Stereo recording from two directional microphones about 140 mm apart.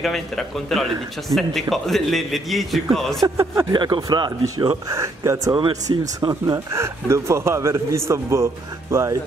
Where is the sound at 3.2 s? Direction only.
20° right (ahead or behind).